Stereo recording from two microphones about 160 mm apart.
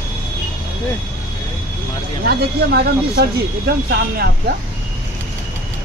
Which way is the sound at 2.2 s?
75° right (ahead or behind).